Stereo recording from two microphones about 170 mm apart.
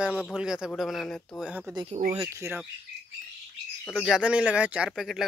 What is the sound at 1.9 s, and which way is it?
Speech, 45° right (ahead or behind).